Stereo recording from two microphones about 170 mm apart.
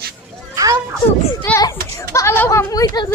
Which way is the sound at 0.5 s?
20° right (ahead or behind).